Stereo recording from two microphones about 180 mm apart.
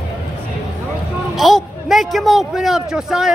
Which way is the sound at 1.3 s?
Centre (ahead or behind).